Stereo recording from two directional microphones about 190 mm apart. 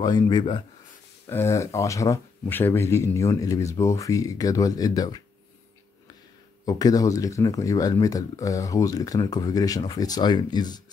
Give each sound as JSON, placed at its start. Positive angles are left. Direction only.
{"t": 0.0, "sound": "speech", "side_deg": 20}
{"t": 6.6, "sound": "speech", "side_deg": 20}